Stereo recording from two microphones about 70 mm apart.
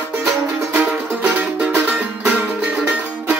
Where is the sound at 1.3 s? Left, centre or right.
Centre.